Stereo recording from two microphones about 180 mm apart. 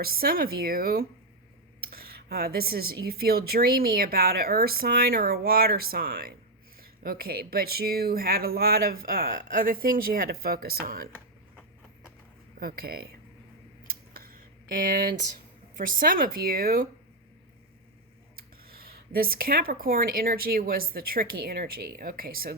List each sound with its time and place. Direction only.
0.0 s speech: 55° right (ahead or behind)
12.5 s speech: 55° right (ahead or behind)
13.8 s a sound: 55° right (ahead or behind)
15.8 s speech: 50° right (ahead or behind)
18.3 s speech: 55° right (ahead or behind)